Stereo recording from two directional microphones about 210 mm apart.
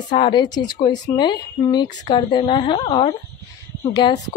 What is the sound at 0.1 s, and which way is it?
Speech, 20° left (ahead or behind).